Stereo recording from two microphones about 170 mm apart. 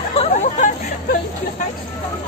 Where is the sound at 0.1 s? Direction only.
40° left (ahead or behind).